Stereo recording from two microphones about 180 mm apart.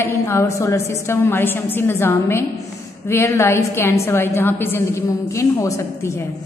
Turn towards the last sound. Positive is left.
turn(degrees=15)  # may be behind; listen again after turning